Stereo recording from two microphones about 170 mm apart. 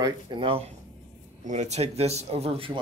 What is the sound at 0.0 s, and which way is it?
Speech, 30° right (ahead or behind).